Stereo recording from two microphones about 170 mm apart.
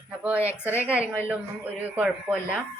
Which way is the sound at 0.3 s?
15° left (ahead or behind).